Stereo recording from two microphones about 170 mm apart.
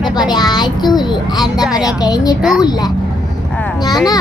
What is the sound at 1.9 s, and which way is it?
Speech, 20° left (ahead or behind).